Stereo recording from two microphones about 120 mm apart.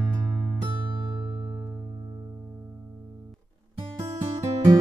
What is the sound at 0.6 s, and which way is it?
Music, 40° right (ahead or behind).